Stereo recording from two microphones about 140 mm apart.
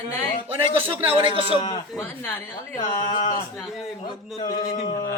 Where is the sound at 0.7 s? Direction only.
40° right (ahead or behind).